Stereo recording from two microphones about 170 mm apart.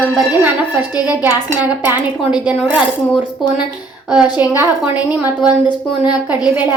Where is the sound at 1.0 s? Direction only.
10° right (ahead or behind).